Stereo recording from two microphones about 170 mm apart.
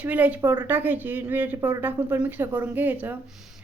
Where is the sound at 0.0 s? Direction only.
10° right (ahead or behind).